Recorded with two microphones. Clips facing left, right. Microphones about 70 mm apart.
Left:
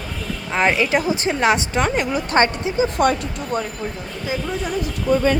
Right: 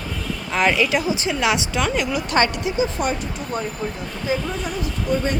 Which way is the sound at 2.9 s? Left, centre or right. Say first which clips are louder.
Left 6 dB; left.